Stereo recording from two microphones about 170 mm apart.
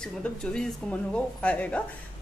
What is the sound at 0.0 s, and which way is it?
Speech, 5° left (ahead or behind).